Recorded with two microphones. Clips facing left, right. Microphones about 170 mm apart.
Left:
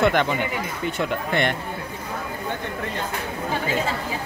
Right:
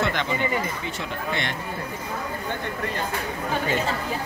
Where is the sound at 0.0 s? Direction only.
55° left (ahead or behind).